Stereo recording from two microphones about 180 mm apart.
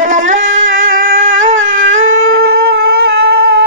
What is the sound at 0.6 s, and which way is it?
Music, 90° right.